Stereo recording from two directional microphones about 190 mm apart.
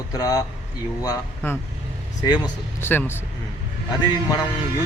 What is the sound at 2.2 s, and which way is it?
Speech, 25° left (ahead or behind).